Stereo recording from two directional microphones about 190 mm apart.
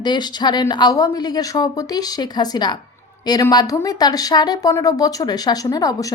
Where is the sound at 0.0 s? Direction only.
20° left (ahead or behind).